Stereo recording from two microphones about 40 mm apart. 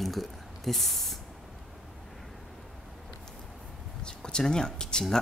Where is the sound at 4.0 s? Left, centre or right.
Left.